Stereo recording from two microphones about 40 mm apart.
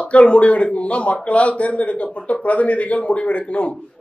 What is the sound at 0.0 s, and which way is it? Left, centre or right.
A man's voice, left.